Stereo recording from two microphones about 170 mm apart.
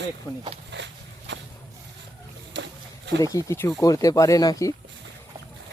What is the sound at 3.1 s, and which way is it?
Speech, 20° left (ahead or behind).